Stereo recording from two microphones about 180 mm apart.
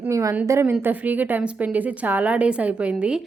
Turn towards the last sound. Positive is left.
turn(degrees=-5)  # may be behind; listen again after turning